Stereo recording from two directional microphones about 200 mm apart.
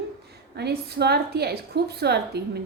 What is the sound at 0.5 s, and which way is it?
A woman's voice, 55° right (ahead or behind).